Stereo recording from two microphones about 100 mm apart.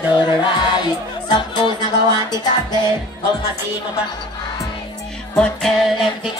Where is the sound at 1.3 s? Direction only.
50° left (ahead or behind).